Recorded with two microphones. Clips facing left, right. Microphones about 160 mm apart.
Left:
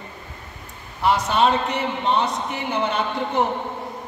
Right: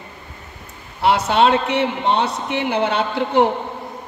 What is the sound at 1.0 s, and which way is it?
A man's voice, 80° right.